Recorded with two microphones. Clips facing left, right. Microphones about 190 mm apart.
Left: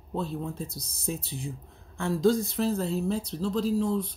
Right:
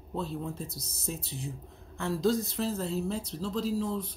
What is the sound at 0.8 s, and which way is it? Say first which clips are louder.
Speech: left 4 dB; centre (ahead or behind).